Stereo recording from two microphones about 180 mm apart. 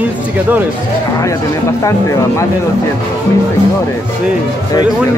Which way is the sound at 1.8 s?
15° left (ahead or behind).